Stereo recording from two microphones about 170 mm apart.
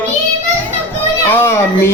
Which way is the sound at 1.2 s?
15° left (ahead or behind).